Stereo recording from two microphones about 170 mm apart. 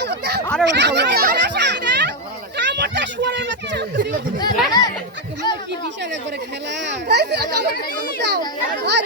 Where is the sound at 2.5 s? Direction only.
90° right.